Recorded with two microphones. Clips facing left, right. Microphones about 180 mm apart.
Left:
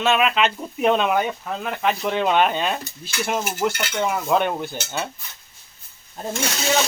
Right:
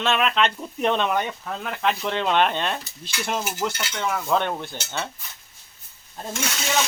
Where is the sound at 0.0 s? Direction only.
5° left (ahead or behind).